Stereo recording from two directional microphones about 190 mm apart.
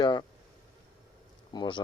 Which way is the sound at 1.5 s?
25° left (ahead or behind).